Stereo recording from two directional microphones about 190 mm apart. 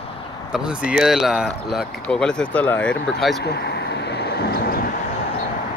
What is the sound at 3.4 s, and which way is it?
Vehicle, 60° left (ahead or behind).